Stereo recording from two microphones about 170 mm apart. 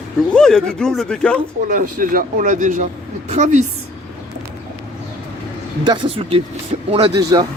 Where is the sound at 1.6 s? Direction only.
55° right (ahead or behind).